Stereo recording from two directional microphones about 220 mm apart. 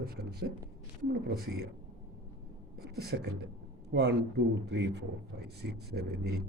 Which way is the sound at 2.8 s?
45° right (ahead or behind).